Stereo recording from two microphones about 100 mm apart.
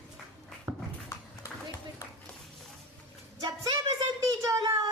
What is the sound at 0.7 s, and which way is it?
Dog, 40° right (ahead or behind).